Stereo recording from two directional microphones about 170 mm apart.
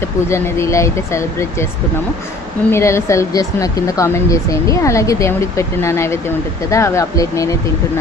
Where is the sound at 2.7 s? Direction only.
15° left (ahead or behind).